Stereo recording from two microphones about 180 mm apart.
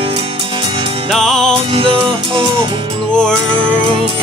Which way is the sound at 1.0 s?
Centre (ahead or behind).